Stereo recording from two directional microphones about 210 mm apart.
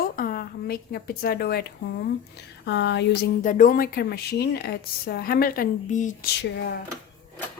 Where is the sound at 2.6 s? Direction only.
55° left (ahead or behind).